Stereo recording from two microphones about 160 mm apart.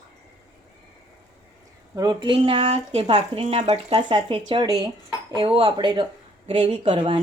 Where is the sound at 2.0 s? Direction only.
30° right (ahead or behind).